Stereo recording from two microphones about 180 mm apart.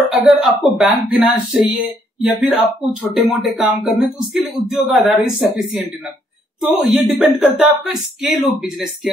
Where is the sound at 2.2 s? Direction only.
5° right (ahead or behind).